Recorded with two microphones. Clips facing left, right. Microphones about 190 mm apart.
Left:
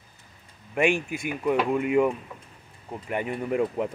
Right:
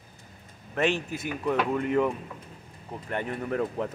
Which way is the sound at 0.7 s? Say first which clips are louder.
Left 3 dB; 10° left (ahead or behind).